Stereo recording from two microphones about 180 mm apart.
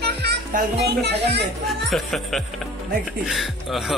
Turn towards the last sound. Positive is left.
turn(degrees=0)  # may be behind; listen again after turning